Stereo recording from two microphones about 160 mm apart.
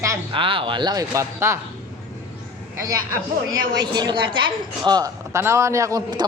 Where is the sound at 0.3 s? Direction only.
35° right (ahead or behind); by 1.5 s 15° right (ahead or behind).